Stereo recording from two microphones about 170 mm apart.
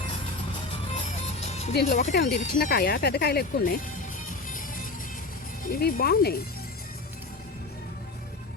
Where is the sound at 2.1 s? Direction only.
65° left (ahead or behind).